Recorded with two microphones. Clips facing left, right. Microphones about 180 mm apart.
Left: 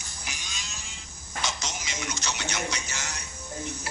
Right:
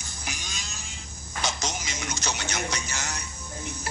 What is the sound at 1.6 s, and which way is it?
Music, 40° right (ahead or behind).